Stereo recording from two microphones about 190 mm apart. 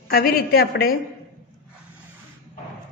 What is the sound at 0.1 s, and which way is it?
Speech, 50° left (ahead or behind).